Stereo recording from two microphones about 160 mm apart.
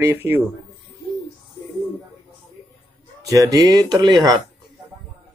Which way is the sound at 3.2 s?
20° right (ahead or behind).